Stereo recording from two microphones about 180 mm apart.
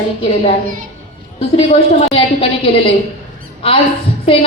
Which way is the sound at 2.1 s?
30° left (ahead or behind).